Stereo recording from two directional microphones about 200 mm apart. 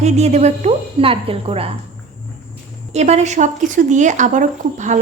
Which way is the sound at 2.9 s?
35° right (ahead or behind).